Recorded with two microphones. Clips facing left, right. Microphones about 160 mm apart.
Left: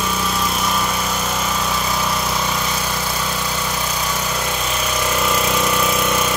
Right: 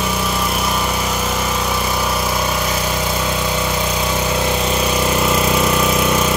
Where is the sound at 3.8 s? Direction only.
25° right (ahead or behind).